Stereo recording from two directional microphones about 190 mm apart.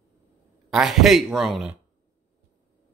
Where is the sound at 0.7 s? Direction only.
Centre (ahead or behind).